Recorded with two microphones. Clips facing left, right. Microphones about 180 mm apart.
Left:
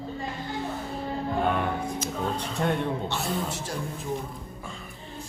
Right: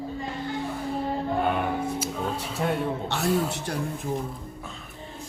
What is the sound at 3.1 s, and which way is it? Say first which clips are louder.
Speech: right 3 dB; 60° right (ahead or behind).